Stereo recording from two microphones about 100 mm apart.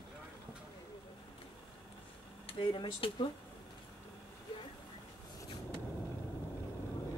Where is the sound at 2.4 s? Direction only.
60° left (ahead or behind).